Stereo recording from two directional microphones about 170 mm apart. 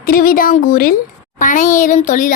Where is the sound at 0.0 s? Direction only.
55° left (ahead or behind).